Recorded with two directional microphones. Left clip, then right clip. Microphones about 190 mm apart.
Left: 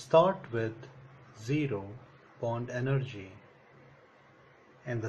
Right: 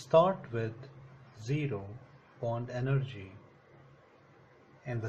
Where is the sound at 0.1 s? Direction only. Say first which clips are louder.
Left 1 dB; 15° left (ahead or behind).